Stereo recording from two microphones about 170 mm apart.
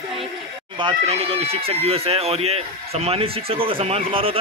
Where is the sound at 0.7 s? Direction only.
35° right (ahead or behind).